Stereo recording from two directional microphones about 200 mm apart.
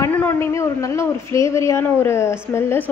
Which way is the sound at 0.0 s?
15° left (ahead or behind).